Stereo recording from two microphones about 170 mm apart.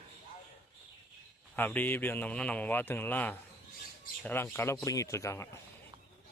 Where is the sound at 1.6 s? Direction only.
10° left (ahead or behind).